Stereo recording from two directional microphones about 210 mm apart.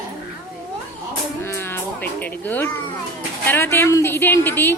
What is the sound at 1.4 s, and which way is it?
Music, 10° left (ahead or behind).